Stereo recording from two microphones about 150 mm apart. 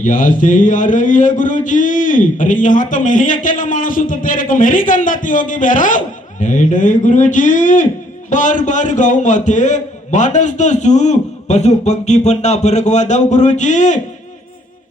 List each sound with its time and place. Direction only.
0.0 s a man's voice: 65° left (ahead or behind)